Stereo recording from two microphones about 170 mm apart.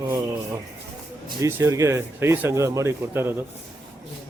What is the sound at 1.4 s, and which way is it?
A man's voice, 15° right (ahead or behind).